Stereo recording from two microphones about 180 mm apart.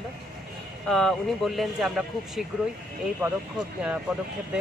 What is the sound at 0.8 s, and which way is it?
Speech, centre (ahead or behind).